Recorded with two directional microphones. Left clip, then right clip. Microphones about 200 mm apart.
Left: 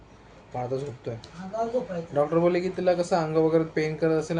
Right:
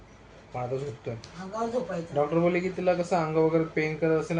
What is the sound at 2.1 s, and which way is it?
Speech, 15° left (ahead or behind).